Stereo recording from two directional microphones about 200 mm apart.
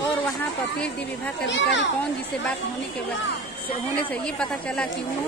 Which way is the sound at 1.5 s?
65° left (ahead or behind).